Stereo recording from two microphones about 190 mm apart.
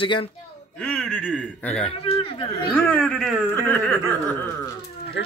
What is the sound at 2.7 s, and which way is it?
Speech, 10° left (ahead or behind).